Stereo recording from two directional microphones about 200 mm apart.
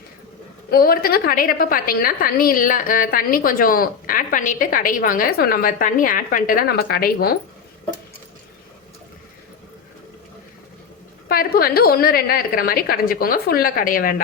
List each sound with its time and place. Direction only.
0.7 s a woman's voice: 50° left (ahead or behind)
11.3 s a woman's voice: 50° left (ahead or behind)